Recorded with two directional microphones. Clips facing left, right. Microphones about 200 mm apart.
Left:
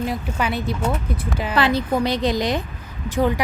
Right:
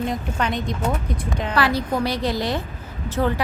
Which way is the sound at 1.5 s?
20° left (ahead or behind).